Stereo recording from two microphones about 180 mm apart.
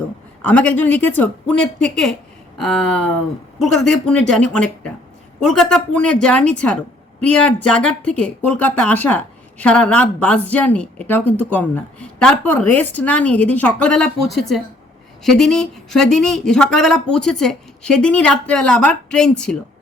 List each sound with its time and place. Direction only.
0.4 s speech: 5° left (ahead or behind)